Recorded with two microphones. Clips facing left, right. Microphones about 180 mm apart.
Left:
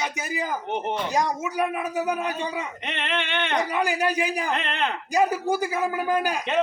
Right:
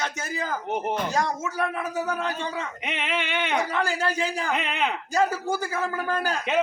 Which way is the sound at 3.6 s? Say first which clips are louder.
Left 5 dB; 15° left (ahead or behind).